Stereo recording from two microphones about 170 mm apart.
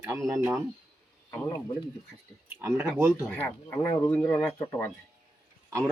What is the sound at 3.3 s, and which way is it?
Speech, 10° left (ahead or behind).